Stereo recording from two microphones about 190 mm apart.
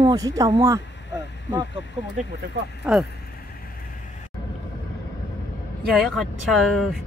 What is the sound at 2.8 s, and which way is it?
Speech, centre (ahead or behind).